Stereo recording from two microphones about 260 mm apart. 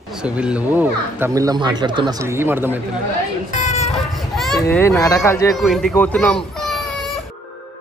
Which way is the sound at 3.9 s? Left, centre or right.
Centre.